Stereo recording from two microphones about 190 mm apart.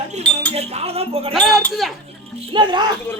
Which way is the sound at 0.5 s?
30° right (ahead or behind).